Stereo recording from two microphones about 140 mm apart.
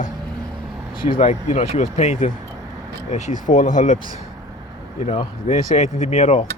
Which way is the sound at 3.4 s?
65° left (ahead or behind).